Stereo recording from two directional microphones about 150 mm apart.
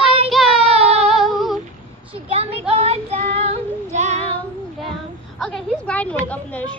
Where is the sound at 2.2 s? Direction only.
40° right (ahead or behind).